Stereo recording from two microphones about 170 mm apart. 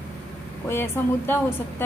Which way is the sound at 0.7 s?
15° left (ahead or behind).